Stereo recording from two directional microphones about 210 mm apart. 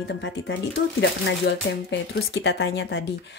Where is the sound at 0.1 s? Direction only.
55° left (ahead or behind).